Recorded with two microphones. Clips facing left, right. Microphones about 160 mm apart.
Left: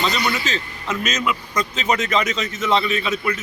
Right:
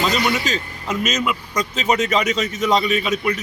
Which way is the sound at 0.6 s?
10° right (ahead or behind).